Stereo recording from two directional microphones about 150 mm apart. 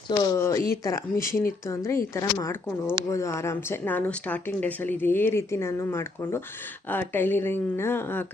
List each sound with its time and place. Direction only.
0.2 s a woman's voice: 20° left (ahead or behind)